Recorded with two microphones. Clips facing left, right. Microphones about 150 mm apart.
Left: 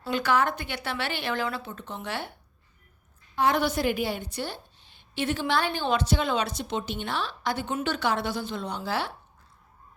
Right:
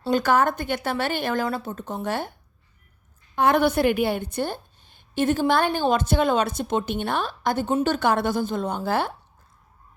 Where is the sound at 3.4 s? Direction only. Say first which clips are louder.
Right 5 dB; 55° right (ahead or behind).